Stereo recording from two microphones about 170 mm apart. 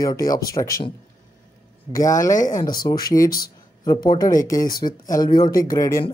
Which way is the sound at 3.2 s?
60° left (ahead or behind).